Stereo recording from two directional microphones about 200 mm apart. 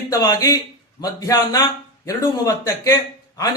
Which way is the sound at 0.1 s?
15° left (ahead or behind).